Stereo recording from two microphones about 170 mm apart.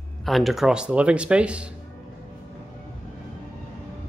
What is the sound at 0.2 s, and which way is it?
Speech, centre (ahead or behind).